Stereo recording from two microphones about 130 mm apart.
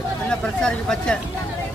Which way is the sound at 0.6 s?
5° left (ahead or behind).